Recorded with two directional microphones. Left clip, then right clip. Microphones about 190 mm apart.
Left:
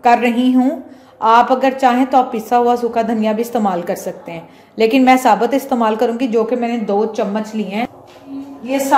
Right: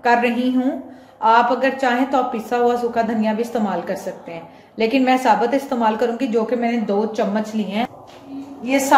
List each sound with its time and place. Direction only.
0.0 s a woman's voice: 35° left (ahead or behind)
8.6 s a woman's voice: 15° right (ahead or behind)